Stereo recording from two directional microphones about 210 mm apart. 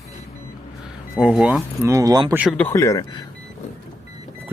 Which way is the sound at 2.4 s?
5° left (ahead or behind).